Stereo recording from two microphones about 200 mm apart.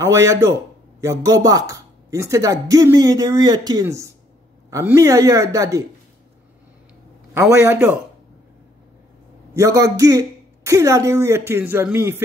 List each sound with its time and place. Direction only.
0.0 s speech: 15° right (ahead or behind)
7.3 s speech: 15° right (ahead or behind)
9.5 s speech: 15° right (ahead or behind)